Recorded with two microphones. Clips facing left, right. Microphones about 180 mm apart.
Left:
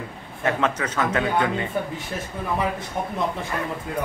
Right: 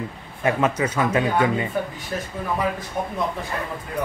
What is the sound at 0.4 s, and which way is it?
A man's voice, 10° right (ahead or behind).